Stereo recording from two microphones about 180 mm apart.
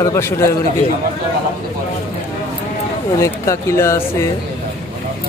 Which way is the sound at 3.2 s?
15° left (ahead or behind).